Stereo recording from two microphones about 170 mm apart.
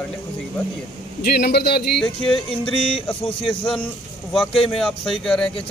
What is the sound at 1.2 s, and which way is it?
Speech, 70° left (ahead or behind).